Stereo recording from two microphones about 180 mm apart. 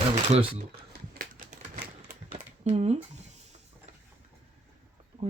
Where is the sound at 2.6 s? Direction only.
35° right (ahead or behind).